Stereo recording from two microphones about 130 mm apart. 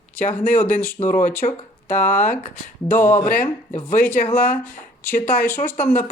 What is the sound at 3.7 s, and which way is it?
Speech, 90° left.